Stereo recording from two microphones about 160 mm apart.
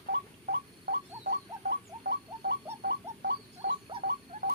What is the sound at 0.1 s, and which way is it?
Rodents, 90° right.